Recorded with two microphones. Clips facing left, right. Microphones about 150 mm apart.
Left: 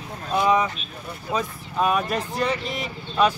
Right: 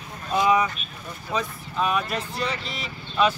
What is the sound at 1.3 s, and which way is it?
Speech, 10° left (ahead or behind).